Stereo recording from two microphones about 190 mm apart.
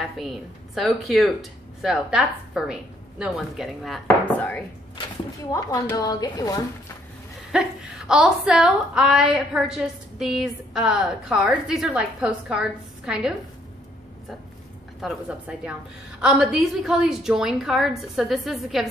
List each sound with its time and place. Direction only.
0.2 s a woman's voice: centre (ahead or behind)
5.5 s speech: 20° left (ahead or behind)
7.5 s a woman's voice: 5° right (ahead or behind)
15.0 s a woman's voice: 5° right (ahead or behind)